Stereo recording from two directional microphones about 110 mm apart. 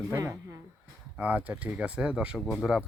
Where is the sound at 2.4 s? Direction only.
10° left (ahead or behind).